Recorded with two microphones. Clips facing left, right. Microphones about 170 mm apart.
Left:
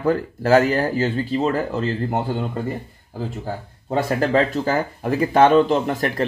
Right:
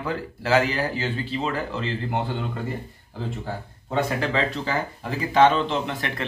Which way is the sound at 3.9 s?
45° left (ahead or behind).